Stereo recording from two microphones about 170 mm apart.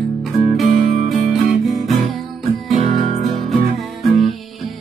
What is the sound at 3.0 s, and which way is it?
Music, 45° left (ahead or behind).